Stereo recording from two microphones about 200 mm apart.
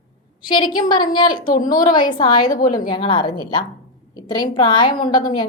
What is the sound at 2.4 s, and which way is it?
Speech, 45° left (ahead or behind).